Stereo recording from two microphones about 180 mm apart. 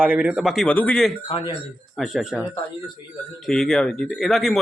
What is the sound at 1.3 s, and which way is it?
Speech, 25° left (ahead or behind).